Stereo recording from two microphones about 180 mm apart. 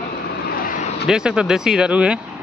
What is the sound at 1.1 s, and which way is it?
Speech, 5° right (ahead or behind).